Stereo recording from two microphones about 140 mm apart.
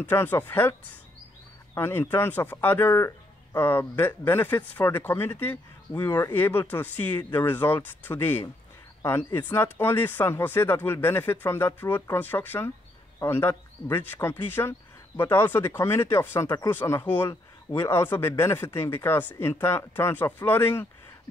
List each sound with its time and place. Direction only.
0.0 s speech: 15° left (ahead or behind)
1.8 s speech: 15° left (ahead or behind)